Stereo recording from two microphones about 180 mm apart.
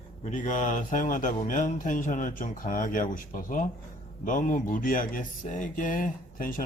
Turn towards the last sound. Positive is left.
turn(degrees=50)  # may be behind; listen again after turning